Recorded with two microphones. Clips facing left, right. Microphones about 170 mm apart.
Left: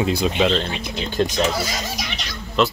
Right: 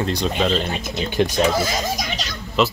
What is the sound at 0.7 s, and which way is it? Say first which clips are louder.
Speech: right 2 dB; 40° right (ahead or behind).